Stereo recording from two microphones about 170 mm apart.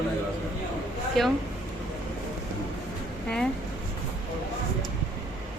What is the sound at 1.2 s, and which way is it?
Speech, centre (ahead or behind).